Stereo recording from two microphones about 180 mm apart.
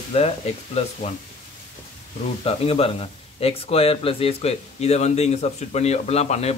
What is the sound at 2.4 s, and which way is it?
Speech, 35° left (ahead or behind).